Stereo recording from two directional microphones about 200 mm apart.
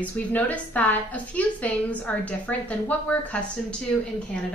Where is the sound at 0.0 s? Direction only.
10° left (ahead or behind).